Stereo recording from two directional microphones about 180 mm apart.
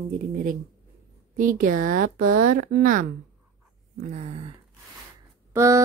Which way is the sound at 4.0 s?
40° right (ahead or behind).